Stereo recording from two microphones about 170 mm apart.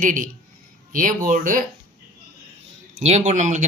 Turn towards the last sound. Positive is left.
turn(degrees=-45)  # may be behind; listen again after turning